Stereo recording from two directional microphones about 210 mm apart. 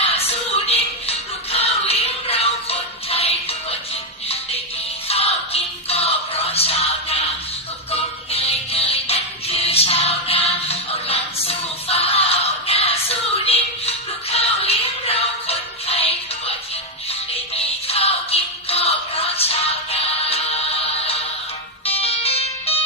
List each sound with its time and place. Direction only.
0.0 s music: 30° left (ahead or behind)
5.0 s music: 30° left (ahead or behind)